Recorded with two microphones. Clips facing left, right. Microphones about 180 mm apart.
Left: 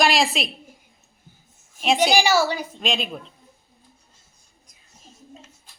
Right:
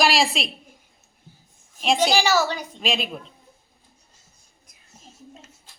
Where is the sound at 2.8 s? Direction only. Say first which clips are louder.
Right 3 dB; centre (ahead or behind).